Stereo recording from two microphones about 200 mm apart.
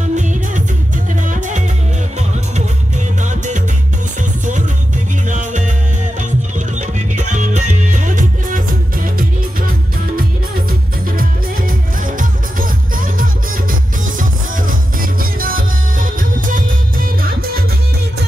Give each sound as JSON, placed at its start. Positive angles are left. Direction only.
{"t": 0.1, "sound": "music", "side_deg": -40}
{"t": 3.2, "sound": "music", "side_deg": -40}
{"t": 5.3, "sound": "music", "side_deg": -40}
{"t": 6.7, "sound": "music", "side_deg": -40}
{"t": 10.1, "sound": "music", "side_deg": -45}